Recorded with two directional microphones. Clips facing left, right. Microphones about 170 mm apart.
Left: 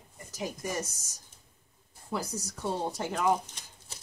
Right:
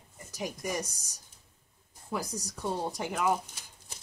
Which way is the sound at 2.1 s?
15° right (ahead or behind).